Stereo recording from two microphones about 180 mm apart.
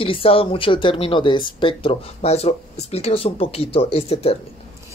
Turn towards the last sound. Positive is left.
turn(degrees=35)  # may be behind; listen again after turning